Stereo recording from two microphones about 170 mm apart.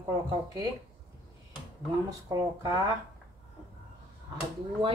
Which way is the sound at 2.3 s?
20° right (ahead or behind).